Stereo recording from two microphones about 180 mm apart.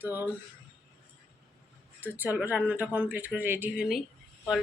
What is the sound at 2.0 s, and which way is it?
A man's voice, 10° right (ahead or behind).